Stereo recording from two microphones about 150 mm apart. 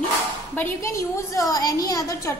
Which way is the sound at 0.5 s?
20° left (ahead or behind).